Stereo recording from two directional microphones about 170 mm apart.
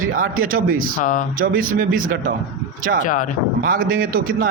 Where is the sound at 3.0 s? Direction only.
50° left (ahead or behind).